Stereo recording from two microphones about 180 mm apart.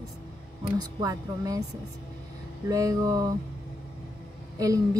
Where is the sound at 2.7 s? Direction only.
20° right (ahead or behind).